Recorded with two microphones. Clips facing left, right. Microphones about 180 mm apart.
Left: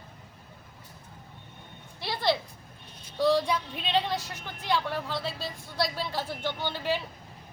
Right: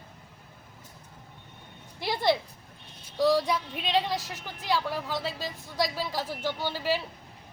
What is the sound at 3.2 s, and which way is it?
Speech, 10° right (ahead or behind).